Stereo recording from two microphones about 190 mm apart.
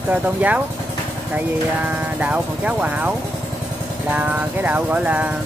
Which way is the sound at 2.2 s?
10° right (ahead or behind).